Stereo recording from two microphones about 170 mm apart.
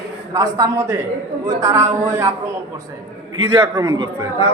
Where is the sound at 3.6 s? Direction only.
20° right (ahead or behind).